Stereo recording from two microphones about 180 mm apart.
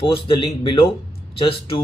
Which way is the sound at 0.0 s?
30° left (ahead or behind).